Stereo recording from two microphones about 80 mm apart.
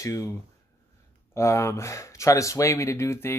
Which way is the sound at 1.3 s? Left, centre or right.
Left.